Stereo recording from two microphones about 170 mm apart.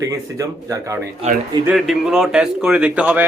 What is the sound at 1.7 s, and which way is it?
A man's voice, centre (ahead or behind).